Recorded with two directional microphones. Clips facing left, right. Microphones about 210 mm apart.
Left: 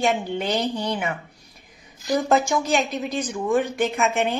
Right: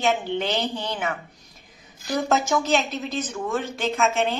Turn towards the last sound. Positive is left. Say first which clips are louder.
# even
turn(degrees=15)  # may be behind; listen again after turning